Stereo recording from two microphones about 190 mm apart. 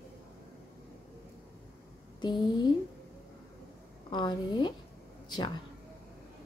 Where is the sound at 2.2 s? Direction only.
20° left (ahead or behind).